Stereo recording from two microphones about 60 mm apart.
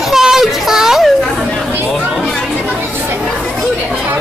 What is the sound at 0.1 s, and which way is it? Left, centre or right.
Children playing, centre.